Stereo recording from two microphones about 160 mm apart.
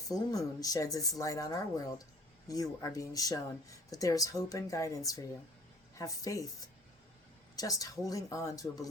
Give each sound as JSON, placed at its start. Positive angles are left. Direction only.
{"t": 0.1, "sound": "speech", "side_deg": 20}
{"t": 7.5, "sound": "speech", "side_deg": 20}